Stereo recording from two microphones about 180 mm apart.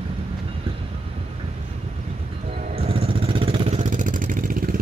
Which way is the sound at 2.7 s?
35° right (ahead or behind).